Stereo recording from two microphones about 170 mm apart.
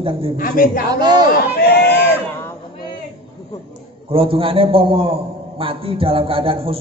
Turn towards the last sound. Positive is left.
turn(degrees=-35)  # may be behind; listen again after turning